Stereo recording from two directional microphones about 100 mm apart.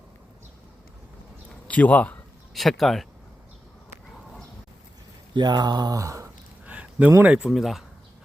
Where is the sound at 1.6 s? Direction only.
15° left (ahead or behind).